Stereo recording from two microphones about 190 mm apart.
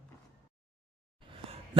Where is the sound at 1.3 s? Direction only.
30° right (ahead or behind).